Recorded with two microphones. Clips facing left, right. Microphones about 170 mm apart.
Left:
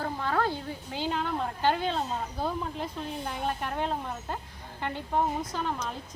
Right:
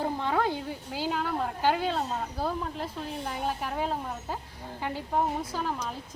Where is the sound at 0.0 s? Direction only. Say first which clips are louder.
Right 1 dB; 20° right (ahead or behind).